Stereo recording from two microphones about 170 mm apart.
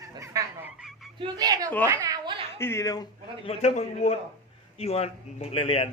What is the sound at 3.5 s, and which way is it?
A man's voice, 40° left (ahead or behind).